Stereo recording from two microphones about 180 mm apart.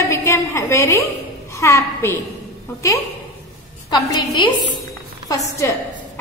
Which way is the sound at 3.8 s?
25° left (ahead or behind).